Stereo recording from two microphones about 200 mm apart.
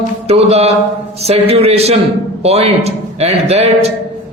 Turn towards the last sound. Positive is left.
turn(degrees=-30)  # may be behind; listen again after turning